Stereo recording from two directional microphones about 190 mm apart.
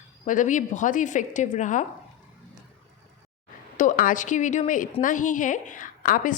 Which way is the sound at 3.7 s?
45° left (ahead or behind).